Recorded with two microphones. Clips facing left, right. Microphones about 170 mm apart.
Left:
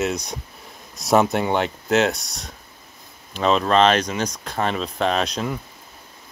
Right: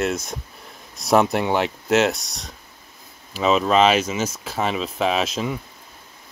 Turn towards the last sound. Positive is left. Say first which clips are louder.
# even
turn(degrees=0)  # may be behind; listen again after turning